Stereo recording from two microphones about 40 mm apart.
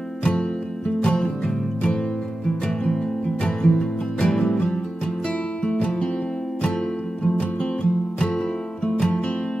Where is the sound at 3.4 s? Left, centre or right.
Left.